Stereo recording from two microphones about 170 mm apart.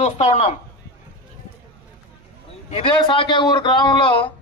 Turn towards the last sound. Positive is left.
turn(degrees=30)  # may be behind; listen again after turning